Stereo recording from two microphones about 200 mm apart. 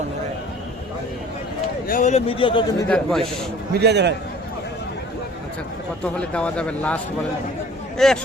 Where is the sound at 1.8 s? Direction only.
40° left (ahead or behind).